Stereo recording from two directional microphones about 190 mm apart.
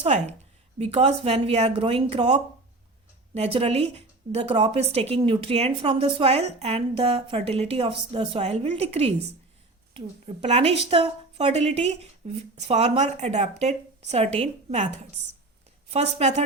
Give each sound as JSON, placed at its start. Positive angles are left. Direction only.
{"t": 0.0, "sound": "a woman's voice", "side_deg": -35}